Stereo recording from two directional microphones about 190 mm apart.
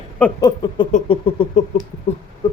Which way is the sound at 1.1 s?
30° left (ahead or behind).